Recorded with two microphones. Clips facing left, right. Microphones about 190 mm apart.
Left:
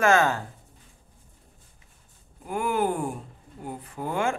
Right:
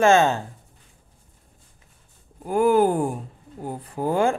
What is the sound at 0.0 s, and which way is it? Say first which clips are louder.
Speech: right 4 dB; 25° right (ahead or behind).